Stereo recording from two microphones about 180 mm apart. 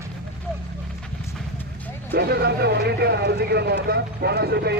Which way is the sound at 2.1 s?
65° right (ahead or behind).